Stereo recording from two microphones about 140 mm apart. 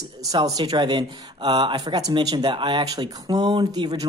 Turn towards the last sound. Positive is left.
turn(degrees=-30)  # may be behind; listen again after turning